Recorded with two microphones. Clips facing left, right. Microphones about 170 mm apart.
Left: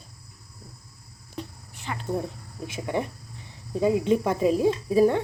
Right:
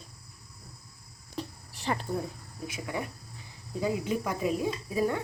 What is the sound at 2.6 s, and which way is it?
A woman's voice, 25° left (ahead or behind).